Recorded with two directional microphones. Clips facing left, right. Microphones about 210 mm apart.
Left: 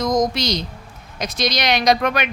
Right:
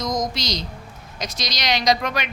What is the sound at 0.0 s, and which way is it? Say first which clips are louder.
Speech: left 6 dB; 55° left (ahead or behind).